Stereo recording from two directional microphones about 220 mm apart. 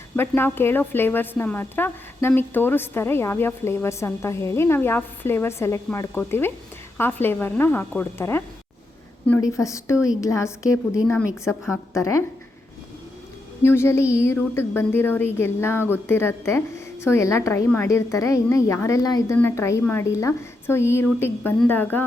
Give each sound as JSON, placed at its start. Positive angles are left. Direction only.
{"t": 0.2, "sound": "a woman's voice", "side_deg": 10}
{"t": 13.6, "sound": "a woman's voice", "side_deg": 10}